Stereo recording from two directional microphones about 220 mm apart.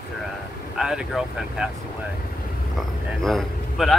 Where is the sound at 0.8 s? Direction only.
Centre (ahead or behind).